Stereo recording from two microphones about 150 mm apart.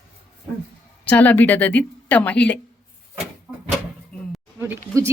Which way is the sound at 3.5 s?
10° right (ahead or behind).